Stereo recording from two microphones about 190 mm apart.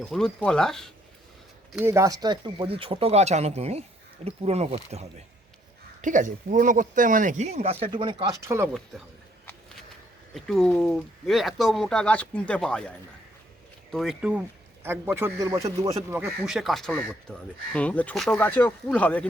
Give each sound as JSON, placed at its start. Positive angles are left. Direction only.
{"t": 0.1, "sound": "speech", "side_deg": 5}
{"t": 1.7, "sound": "speech", "side_deg": -15}
{"t": 8.9, "sound": "speech", "side_deg": 0}
{"t": 10.3, "sound": "speech", "side_deg": 0}
{"t": 13.9, "sound": "a man's voice", "side_deg": 0}
{"t": 16.5, "sound": "speech", "side_deg": 0}